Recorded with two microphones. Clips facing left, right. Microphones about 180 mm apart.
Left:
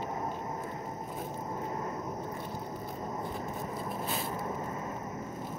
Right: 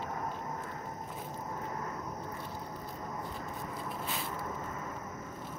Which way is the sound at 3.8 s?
35° left (ahead or behind).